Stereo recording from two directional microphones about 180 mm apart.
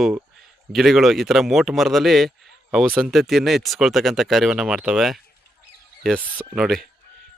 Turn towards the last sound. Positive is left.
turn(degrees=0)  # may be behind; listen again after turning